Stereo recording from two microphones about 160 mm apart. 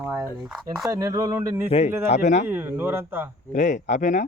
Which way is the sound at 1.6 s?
40° left (ahead or behind).